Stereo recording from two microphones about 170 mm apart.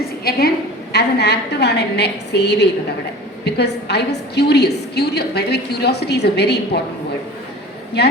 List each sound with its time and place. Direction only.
0.3 s a sound: 65° left (ahead or behind)
0.9 s a woman's voice: 75° left (ahead or behind)
8.0 s a woman's voice: 75° left (ahead or behind)